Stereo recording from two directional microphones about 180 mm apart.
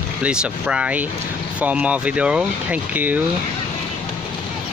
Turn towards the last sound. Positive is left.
turn(degrees=-10)  # may be behind; listen again after turning